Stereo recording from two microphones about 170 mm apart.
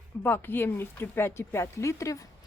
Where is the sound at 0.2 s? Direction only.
10° left (ahead or behind).